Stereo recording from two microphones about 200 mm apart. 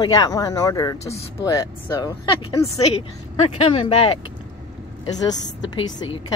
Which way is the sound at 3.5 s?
30° left (ahead or behind).